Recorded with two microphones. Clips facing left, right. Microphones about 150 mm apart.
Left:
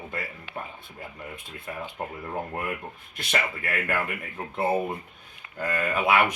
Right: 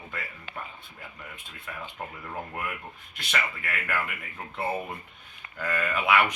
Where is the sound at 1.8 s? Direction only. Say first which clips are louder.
Left 4 dB; 20° left (ahead or behind).